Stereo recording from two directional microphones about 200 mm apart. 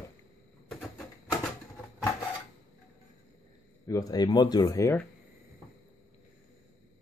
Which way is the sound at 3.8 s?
15° left (ahead or behind).